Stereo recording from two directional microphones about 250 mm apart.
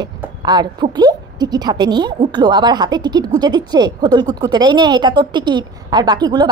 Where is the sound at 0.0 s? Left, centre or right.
Centre.